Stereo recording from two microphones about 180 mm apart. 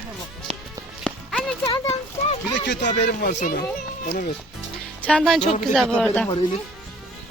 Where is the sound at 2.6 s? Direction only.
75° left (ahead or behind).